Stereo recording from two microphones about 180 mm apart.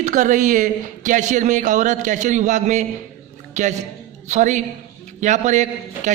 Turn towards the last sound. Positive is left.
turn(degrees=-40)  # may be behind; listen again after turning